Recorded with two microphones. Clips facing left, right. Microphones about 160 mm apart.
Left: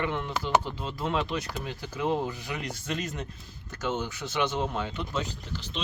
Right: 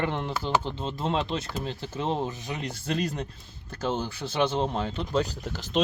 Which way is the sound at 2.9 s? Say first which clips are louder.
Right 5 dB; 35° right (ahead or behind).